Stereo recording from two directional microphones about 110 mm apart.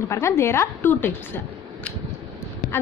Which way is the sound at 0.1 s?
25° left (ahead or behind).